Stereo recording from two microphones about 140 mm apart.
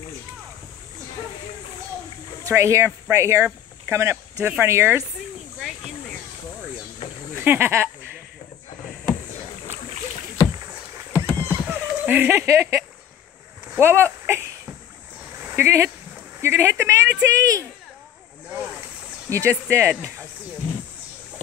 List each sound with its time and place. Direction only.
2.4 s speech: 20° right (ahead or behind)
7.3 s speech: 15° right (ahead or behind)
11.3 s a sound: 15° right (ahead or behind)
13.7 s speech: 20° right (ahead or behind)
15.3 s a sound: 15° right (ahead or behind)
16.3 s speech: 20° right (ahead or behind)
19.3 s speech: 20° right (ahead or behind)